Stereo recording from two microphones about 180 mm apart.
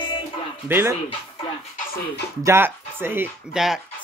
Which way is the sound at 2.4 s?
15° right (ahead or behind).